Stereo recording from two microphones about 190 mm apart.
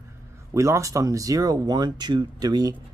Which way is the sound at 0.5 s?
15° right (ahead or behind).